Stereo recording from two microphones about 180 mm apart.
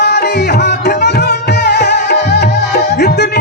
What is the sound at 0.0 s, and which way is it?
Music, 65° left (ahead or behind).